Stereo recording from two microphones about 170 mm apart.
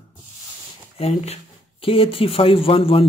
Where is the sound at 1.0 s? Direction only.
40° left (ahead or behind).